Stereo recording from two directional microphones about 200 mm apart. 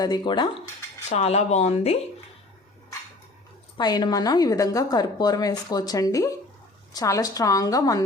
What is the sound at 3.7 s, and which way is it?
A woman's voice, 20° left (ahead or behind).